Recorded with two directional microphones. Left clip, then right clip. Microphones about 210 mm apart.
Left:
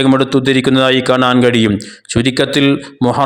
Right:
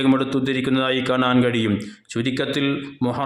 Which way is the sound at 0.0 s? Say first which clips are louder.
Left 8 dB; 35° left (ahead or behind).